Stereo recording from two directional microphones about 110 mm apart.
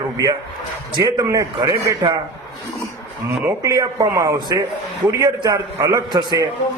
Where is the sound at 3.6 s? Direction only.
30° right (ahead or behind).